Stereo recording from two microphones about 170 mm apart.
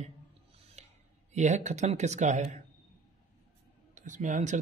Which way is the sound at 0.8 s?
40° right (ahead or behind).